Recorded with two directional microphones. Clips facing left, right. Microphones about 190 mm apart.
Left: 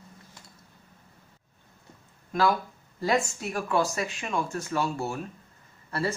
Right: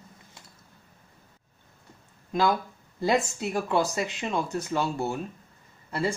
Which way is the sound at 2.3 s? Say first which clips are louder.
Even; 20° right (ahead or behind).